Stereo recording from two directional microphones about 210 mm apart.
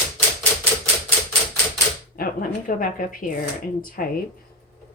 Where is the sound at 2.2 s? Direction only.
40° left (ahead or behind).